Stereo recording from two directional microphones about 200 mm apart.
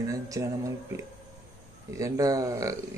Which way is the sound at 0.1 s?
15° right (ahead or behind).